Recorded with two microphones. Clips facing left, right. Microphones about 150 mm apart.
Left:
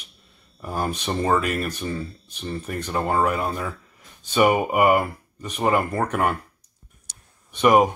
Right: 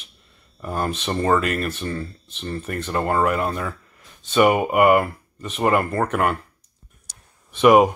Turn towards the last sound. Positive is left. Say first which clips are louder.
# right 3 dB
turn(degrees=-5)  # may be behind; listen again after turning